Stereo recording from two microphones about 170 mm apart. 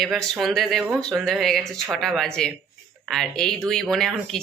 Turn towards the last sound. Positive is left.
turn(degrees=0)  # may be behind; listen again after turning